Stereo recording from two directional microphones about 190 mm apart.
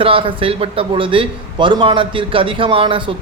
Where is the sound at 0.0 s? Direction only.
30° right (ahead or behind).